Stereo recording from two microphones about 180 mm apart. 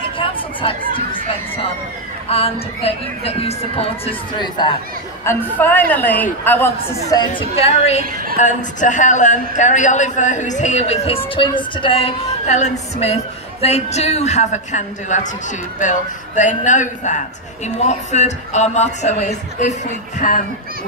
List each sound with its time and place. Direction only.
0.2 s chatter: 30° left (ahead or behind)
2.2 s a man's voice: 35° left (ahead or behind)
5.2 s a man's voice: 10° left (ahead or behind)
7.1 s a man's voice: 25° left (ahead or behind); by 20.4 s 45° left (ahead or behind)